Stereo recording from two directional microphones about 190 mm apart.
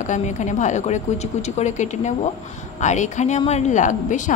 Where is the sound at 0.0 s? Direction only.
40° left (ahead or behind).